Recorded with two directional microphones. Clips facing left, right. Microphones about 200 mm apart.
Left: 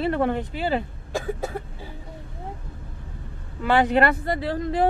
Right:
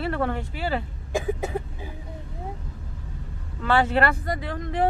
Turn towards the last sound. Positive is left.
turn(degrees=35)  # may be behind; listen again after turning